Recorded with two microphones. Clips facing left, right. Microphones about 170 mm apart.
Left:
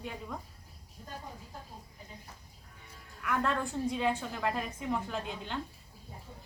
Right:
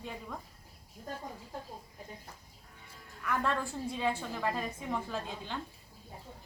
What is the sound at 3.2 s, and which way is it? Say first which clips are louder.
A woman's voice: left 1 dB; centre (ahead or behind).